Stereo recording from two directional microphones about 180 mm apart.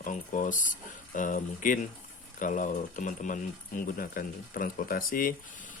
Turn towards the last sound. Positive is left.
turn(degrees=50)  # may be behind; listen again after turning